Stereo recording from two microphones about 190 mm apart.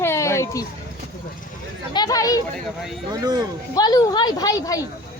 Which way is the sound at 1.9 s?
20° left (ahead or behind).